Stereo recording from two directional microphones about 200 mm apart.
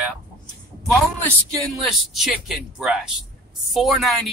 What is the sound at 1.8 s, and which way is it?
Speech, centre (ahead or behind).